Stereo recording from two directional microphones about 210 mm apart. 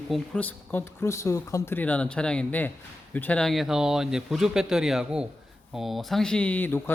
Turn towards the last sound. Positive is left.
turn(degrees=10)  # may be behind; listen again after turning